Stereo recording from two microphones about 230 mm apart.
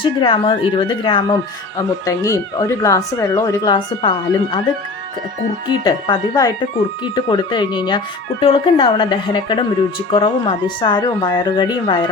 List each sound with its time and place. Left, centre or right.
0.0 s speech: left
5.6 s speech: centre